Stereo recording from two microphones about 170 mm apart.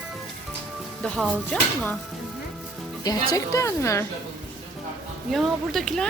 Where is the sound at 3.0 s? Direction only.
20° left (ahead or behind).